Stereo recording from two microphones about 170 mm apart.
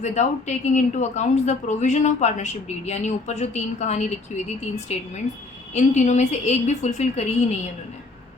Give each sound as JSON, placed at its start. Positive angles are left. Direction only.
{"t": 0.0, "sound": "speech", "side_deg": 45}